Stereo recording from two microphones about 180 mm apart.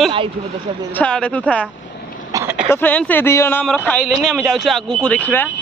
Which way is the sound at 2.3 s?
15° right (ahead or behind).